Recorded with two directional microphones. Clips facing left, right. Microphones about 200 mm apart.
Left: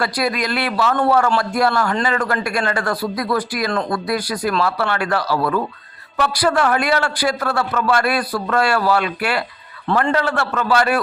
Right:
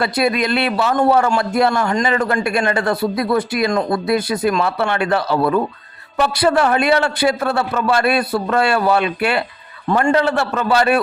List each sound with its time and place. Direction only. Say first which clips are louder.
0.0 s a man's voice: right 3 dB; 25° right (ahead or behind)